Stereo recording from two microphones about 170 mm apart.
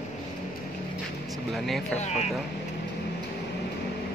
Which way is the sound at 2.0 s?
40° left (ahead or behind).